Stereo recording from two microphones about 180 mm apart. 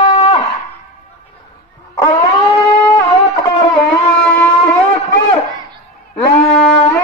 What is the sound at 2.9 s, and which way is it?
Music, 25° left (ahead or behind).